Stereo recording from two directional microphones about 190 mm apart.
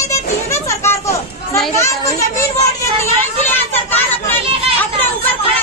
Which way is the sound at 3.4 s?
10° left (ahead or behind).